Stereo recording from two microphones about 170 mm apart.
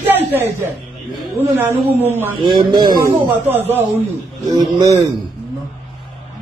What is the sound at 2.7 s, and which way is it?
Speech, 25° right (ahead or behind).